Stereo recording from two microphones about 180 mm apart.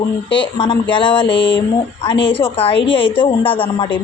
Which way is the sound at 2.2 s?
30° left (ahead or behind).